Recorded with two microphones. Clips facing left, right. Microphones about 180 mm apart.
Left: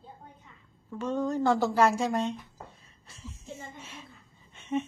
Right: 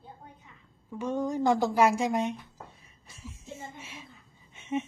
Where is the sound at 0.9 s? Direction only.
10° right (ahead or behind).